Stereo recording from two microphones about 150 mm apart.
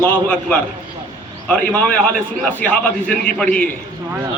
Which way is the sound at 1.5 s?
10° left (ahead or behind).